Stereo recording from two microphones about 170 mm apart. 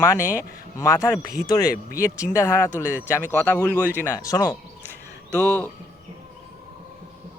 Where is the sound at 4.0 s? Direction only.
15° left (ahead or behind).